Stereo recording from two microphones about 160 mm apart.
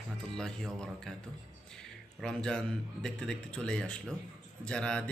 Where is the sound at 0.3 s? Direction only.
5° left (ahead or behind).